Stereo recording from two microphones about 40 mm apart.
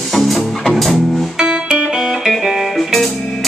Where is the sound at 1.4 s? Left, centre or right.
Right.